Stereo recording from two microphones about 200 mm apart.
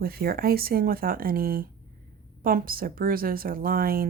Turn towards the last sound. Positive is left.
turn(degrees=-45)  # may be behind; listen again after turning